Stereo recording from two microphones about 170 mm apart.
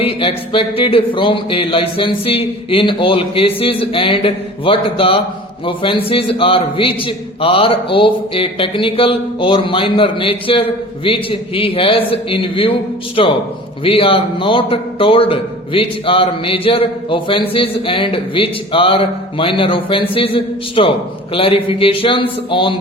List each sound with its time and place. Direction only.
0.0 s a man's voice: 30° left (ahead or behind)